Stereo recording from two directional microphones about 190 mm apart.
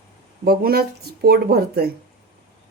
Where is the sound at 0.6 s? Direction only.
55° right (ahead or behind).